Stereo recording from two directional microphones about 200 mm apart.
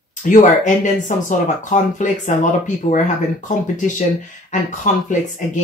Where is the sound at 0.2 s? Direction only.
40° left (ahead or behind).